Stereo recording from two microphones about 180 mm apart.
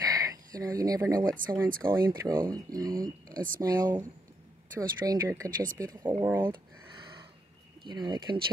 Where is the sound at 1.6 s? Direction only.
55° right (ahead or behind).